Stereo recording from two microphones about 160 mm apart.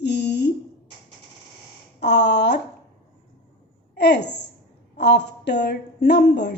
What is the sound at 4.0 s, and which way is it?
A woman's voice, 90° left.